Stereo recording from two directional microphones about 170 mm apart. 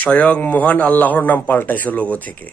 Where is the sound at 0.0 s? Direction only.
10° left (ahead or behind).